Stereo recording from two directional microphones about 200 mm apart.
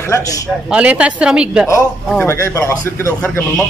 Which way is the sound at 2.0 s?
10° left (ahead or behind).